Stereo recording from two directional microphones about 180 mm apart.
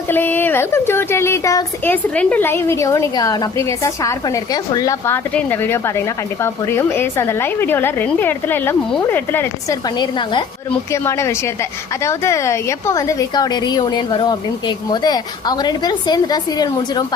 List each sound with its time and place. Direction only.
0.1 s speech: 10° left (ahead or behind)
10.0 s a woman's voice: 25° left (ahead or behind)
10.7 s a woman's voice: 15° left (ahead or behind)